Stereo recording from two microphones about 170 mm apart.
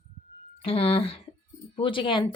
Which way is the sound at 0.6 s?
35° left (ahead or behind).